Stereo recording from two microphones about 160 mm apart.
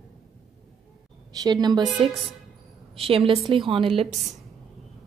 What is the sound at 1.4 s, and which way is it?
A woman's voice, 25° right (ahead or behind).